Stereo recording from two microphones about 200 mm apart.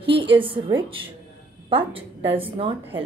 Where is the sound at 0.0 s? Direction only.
25° right (ahead or behind).